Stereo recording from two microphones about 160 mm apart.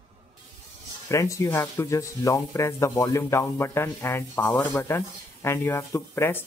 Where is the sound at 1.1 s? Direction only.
20° left (ahead or behind).